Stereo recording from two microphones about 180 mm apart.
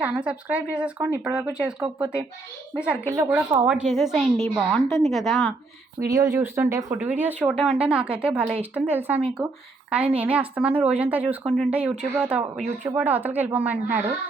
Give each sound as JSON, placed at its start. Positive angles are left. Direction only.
{"t": 0.0, "sound": "a woman's voice", "side_deg": -5}
{"t": 3.1, "sound": "a woman's voice", "side_deg": -15}
{"t": 3.7, "sound": "speech", "side_deg": -5}
{"t": 6.1, "sound": "a woman's voice", "side_deg": -20}